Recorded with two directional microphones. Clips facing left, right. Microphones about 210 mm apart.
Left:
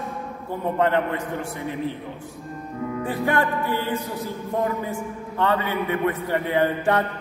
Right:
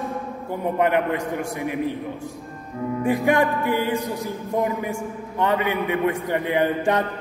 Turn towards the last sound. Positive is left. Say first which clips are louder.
# even
turn(degrees=-15)  # may be behind; listen again after turning